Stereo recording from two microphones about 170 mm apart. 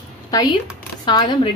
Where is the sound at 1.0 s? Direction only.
25° left (ahead or behind).